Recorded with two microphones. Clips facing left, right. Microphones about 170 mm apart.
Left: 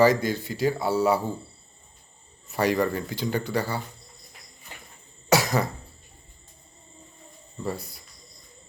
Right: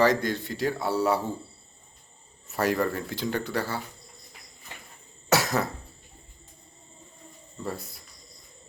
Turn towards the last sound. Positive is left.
turn(degrees=0)  # may be behind; listen again after turning